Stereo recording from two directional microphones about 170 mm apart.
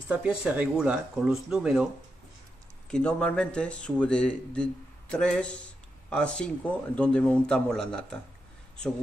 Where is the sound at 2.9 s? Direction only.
5° left (ahead or behind).